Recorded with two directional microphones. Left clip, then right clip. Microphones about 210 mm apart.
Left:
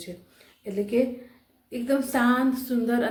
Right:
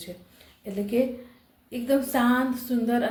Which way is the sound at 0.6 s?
15° left (ahead or behind).